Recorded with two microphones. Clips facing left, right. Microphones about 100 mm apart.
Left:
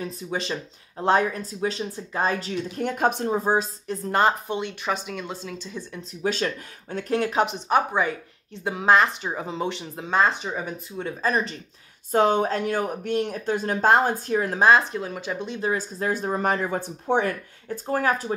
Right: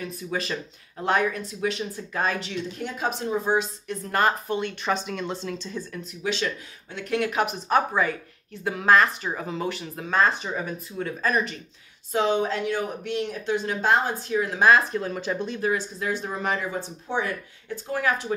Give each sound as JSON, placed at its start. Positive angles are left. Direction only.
{"t": 0.0, "sound": "speech", "side_deg": 25}
{"t": 2.5, "sound": "speech", "side_deg": 50}
{"t": 4.8, "sound": "speech", "side_deg": 5}
{"t": 6.2, "sound": "speech", "side_deg": 45}
{"t": 12.1, "sound": "speech", "side_deg": 50}
{"t": 14.6, "sound": "speech", "side_deg": 25}
{"t": 15.0, "sound": "speech", "side_deg": 15}
{"t": 15.7, "sound": "speech", "side_deg": 40}
{"t": 17.6, "sound": "speech", "side_deg": 40}